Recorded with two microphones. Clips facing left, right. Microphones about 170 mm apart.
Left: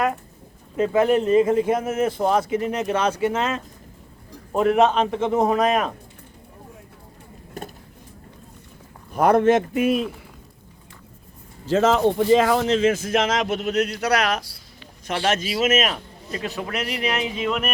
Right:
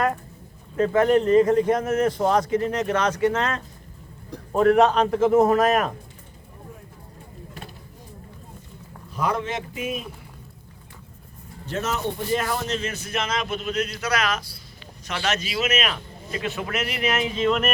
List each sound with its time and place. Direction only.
0.8 s a man's voice: 10° left (ahead or behind)
7.6 s a sound: 45° left (ahead or behind)
9.1 s speech: 55° left (ahead or behind)
11.6 s speech: 90° left; by 14.5 s 65° left (ahead or behind)
15.3 s a man's voice: 50° left (ahead or behind)
17.2 s speech: 15° left (ahead or behind)